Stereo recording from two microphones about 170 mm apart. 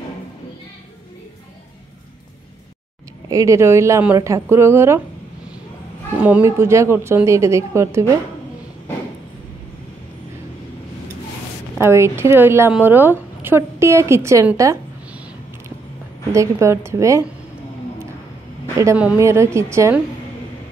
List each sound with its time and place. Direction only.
3.3 s a woman's voice: 20° right (ahead or behind)
6.2 s a woman's voice: 10° right (ahead or behind)
11.8 s a woman's voice: 15° right (ahead or behind)
16.3 s a woman's voice: 15° right (ahead or behind)
18.9 s a woman's voice: 10° right (ahead or behind)